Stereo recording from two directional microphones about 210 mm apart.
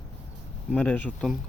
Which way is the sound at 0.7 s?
10° left (ahead or behind).